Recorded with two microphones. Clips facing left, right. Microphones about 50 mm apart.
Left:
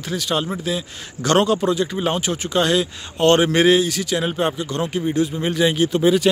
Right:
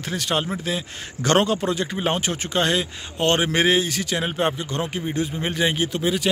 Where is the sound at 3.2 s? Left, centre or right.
Centre; by 5.9 s right.